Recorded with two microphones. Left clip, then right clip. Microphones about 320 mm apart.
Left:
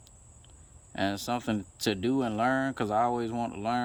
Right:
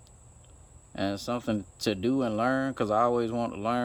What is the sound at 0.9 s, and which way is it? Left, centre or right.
Speech, centre.